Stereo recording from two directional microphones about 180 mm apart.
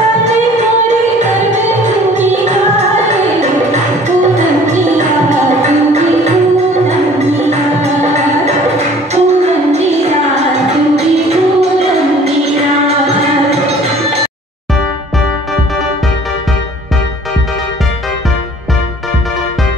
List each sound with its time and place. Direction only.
0.8 s music: 40° right (ahead or behind)
4.4 s music: 40° right (ahead or behind)
6.9 s music: 40° right (ahead or behind)